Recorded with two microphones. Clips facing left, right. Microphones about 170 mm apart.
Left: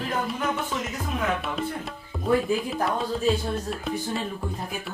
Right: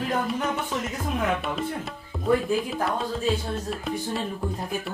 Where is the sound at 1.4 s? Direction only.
Centre (ahead or behind).